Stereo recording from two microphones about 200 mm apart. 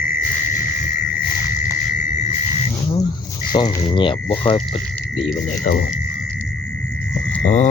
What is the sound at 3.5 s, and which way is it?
Speech, 20° left (ahead or behind).